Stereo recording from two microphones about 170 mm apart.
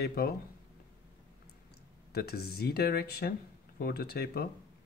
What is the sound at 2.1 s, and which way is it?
Speech, 70° left (ahead or behind).